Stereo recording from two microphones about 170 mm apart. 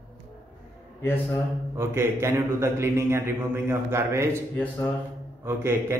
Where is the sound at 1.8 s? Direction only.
15° right (ahead or behind).